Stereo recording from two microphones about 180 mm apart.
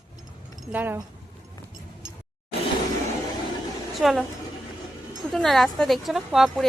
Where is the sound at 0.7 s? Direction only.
10° right (ahead or behind).